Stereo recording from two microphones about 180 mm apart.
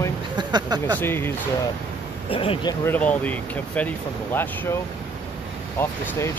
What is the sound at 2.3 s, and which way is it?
Speech, 30° left (ahead or behind).